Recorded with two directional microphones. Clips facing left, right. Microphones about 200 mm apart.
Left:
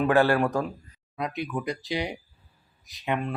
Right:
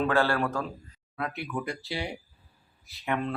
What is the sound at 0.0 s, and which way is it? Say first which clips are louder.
Speech: left 4 dB; 15° left (ahead or behind).